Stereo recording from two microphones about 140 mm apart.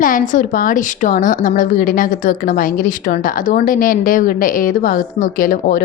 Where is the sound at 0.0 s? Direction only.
70° left (ahead or behind).